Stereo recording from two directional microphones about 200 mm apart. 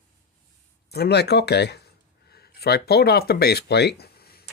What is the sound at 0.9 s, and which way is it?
Speech, 55° left (ahead or behind).